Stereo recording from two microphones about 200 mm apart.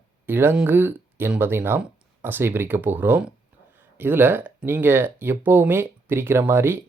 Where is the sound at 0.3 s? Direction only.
10° right (ahead or behind).